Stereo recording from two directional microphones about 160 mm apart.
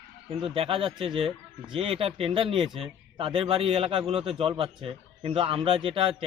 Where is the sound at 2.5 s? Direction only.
Centre (ahead or behind).